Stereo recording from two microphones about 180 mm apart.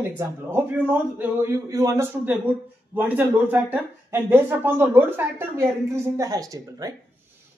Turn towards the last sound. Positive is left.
turn(degrees=-20)  # may be behind; listen again after turning